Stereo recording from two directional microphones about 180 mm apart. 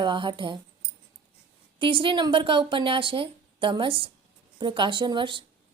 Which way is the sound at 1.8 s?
30° right (ahead or behind).